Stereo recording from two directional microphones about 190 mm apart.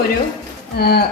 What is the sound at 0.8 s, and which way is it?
Speech, 55° left (ahead or behind).